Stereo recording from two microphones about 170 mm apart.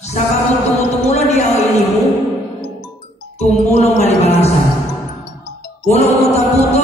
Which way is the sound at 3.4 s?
40° left (ahead or behind).